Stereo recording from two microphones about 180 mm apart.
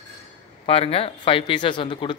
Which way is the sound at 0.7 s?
30° left (ahead or behind).